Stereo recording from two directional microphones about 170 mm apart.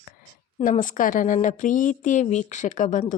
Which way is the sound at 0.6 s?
50° left (ahead or behind).